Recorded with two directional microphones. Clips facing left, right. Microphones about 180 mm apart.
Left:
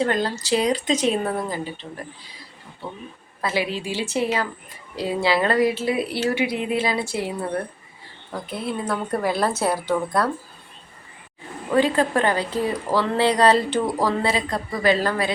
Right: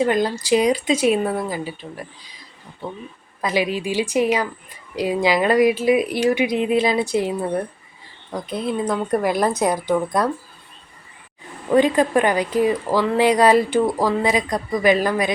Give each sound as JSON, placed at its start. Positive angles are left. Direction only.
{"t": 0.0, "sound": "speech", "side_deg": -15}
{"t": 3.4, "sound": "speech", "side_deg": -15}
{"t": 11.7, "sound": "speech", "side_deg": -15}